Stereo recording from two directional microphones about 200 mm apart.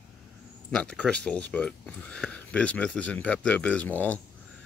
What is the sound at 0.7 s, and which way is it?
Speech, 5° left (ahead or behind).